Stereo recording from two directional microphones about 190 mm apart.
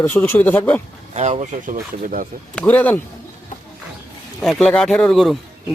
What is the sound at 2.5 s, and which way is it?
Speech, 10° left (ahead or behind).